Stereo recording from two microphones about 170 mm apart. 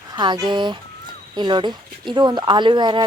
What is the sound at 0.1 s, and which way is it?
Speech, 25° right (ahead or behind).